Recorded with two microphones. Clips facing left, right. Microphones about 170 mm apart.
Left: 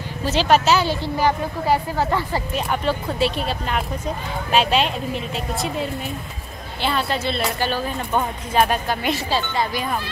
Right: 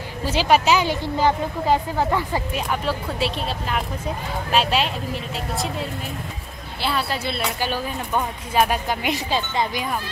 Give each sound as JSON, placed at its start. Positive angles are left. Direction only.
{"t": 0.2, "sound": "speech", "side_deg": -10}